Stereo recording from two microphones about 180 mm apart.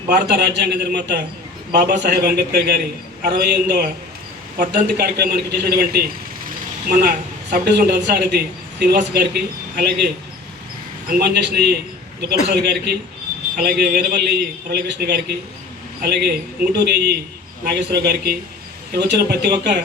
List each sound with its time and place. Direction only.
0.1 s a man's voice: 65° right (ahead or behind)
7.5 s speech: 65° right (ahead or behind)
11.1 s a man's voice: 65° right (ahead or behind)
14.7 s a man's voice: 65° right (ahead or behind)